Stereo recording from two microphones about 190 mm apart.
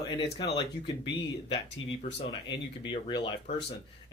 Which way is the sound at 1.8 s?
90° left.